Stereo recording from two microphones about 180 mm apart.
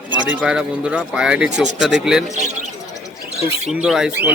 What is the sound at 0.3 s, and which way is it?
A man's voice, 5° right (ahead or behind).